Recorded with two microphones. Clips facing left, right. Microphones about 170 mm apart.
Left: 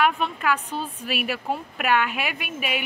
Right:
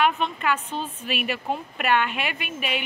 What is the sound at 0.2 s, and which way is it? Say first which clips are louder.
A woman's voice: left 1 dB; 5° left (ahead or behind).